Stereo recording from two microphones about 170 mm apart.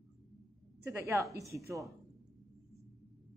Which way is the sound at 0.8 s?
15° right (ahead or behind).